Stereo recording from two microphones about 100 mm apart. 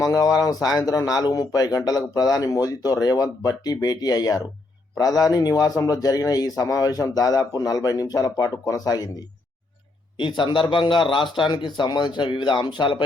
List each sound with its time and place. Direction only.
0.0 s speech: 35° left (ahead or behind)
10.2 s a man's voice: 55° left (ahead or behind)